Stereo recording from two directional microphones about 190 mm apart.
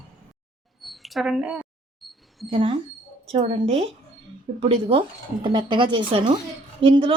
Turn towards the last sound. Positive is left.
turn(degrees=-25)  # may be behind; listen again after turning